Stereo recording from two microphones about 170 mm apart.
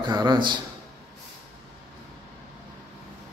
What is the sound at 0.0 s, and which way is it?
Speech, 25° right (ahead or behind).